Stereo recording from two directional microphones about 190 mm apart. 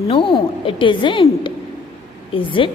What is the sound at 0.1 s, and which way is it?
A woman's voice, 25° left (ahead or behind).